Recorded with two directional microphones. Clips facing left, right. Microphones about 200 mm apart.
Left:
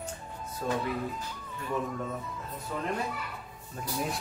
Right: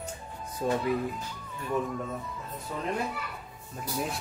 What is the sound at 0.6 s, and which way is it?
Speech, 15° right (ahead or behind).